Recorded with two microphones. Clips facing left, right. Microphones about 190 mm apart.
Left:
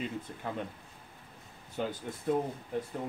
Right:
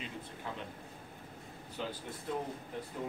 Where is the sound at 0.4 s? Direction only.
50° left (ahead or behind).